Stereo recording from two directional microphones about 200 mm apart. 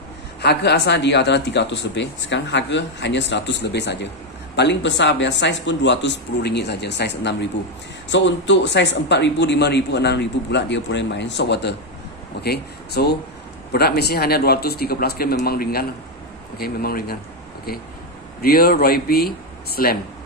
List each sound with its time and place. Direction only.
0.4 s a man's voice: 55° left (ahead or behind)
18.4 s a man's voice: 50° left (ahead or behind)